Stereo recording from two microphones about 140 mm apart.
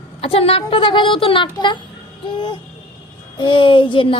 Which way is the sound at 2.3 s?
35° left (ahead or behind).